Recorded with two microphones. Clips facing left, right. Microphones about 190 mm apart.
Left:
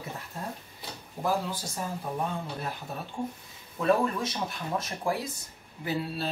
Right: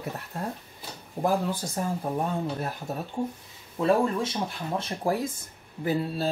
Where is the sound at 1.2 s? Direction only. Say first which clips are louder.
Right 4 dB; 55° right (ahead or behind).